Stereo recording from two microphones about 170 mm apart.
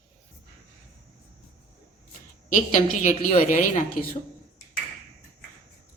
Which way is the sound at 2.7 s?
45° left (ahead or behind).